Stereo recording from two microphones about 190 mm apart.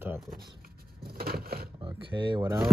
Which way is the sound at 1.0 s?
55° right (ahead or behind).